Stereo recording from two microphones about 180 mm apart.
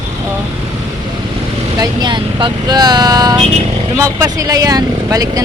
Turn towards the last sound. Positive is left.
turn(degrees=-20)  # may be behind; listen again after turning